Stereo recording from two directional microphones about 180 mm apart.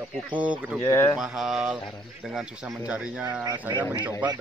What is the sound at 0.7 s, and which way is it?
Speech, 15° left (ahead or behind).